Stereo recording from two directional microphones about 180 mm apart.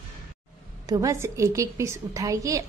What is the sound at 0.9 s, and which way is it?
A woman's voice, 15° right (ahead or behind).